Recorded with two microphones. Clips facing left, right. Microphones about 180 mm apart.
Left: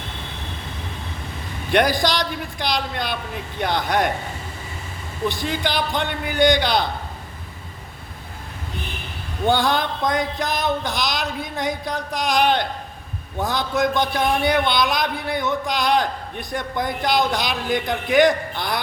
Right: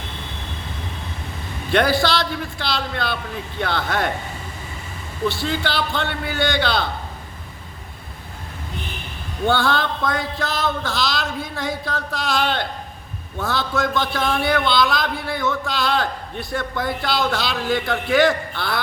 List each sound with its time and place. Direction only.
1.7 s a man's voice: 15° left (ahead or behind)
5.3 s a man's voice: 15° left (ahead or behind)
9.5 s a man's voice: 15° left (ahead or behind)